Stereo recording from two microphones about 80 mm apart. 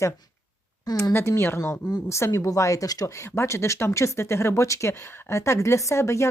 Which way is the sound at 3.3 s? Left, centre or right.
Left.